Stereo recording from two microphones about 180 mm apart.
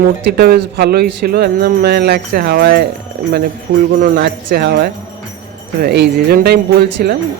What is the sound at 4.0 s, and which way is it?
Speech, 70° right (ahead or behind).